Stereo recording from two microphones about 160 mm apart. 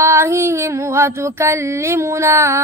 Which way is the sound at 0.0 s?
15° right (ahead or behind).